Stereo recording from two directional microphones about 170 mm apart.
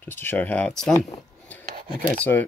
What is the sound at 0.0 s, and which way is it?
Speech, 10° left (ahead or behind).